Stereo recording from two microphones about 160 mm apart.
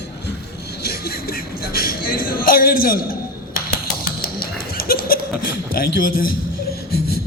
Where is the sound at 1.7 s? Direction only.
70° left (ahead or behind).